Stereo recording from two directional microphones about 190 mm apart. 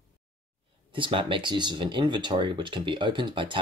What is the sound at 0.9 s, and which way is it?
Speech, 25° right (ahead or behind).